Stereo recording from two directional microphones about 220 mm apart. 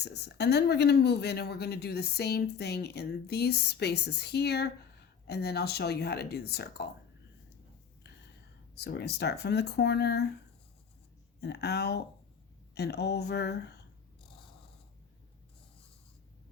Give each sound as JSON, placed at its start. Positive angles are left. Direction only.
{"t": 0.0, "sound": "speech", "side_deg": 50}
{"t": 8.7, "sound": "speech", "side_deg": 50}
{"t": 11.3, "sound": "speech", "side_deg": 50}